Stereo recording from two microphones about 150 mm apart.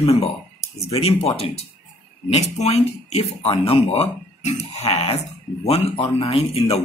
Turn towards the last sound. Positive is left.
turn(degrees=40)  # may be behind; listen again after turning